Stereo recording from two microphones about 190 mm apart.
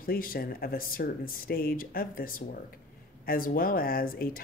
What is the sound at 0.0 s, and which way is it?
Speech, 50° left (ahead or behind).